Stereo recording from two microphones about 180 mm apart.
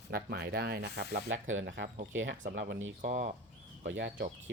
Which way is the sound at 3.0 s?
45° right (ahead or behind).